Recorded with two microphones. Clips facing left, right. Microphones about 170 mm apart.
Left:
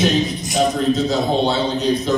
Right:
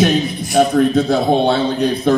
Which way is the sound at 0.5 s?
55° right (ahead or behind).